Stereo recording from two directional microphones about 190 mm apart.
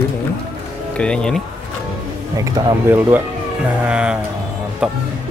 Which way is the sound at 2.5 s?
15° right (ahead or behind).